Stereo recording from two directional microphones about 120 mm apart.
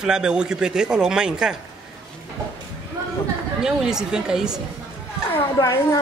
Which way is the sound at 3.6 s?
5° right (ahead or behind).